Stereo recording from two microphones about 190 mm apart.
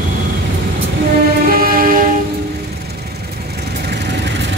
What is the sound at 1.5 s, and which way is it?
Music, 50° right (ahead or behind).